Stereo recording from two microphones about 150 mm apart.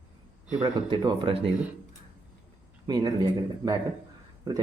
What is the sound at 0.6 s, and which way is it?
Speech, 30° right (ahead or behind).